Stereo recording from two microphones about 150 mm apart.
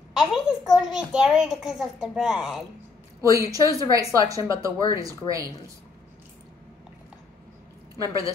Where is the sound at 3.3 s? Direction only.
25° right (ahead or behind).